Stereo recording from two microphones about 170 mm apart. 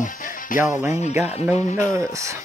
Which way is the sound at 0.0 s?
50° left (ahead or behind).